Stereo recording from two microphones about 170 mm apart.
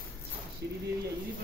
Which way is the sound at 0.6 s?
85° right.